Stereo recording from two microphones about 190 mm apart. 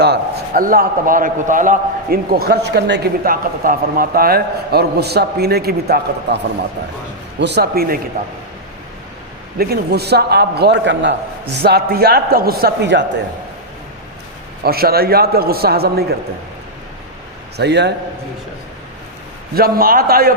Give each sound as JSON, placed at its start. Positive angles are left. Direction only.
{"t": 0.0, "sound": "a man's voice", "side_deg": -55}
{"t": 9.6, "sound": "a man's voice", "side_deg": -55}
{"t": 11.6, "sound": "a man's voice", "side_deg": -55}
{"t": 14.6, "sound": "a man's voice", "side_deg": -55}
{"t": 17.6, "sound": "a man's voice", "side_deg": -60}
{"t": 19.5, "sound": "a man's voice", "side_deg": -50}